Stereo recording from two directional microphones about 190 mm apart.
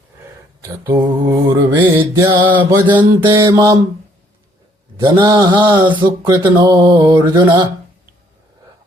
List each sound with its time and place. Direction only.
0.9 s mantra: 20° right (ahead or behind)
3.2 s mantra: 20° right (ahead or behind)
4.9 s mantra: 25° right (ahead or behind)